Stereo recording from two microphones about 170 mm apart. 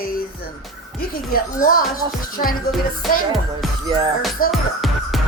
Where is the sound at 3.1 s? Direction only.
55° left (ahead or behind).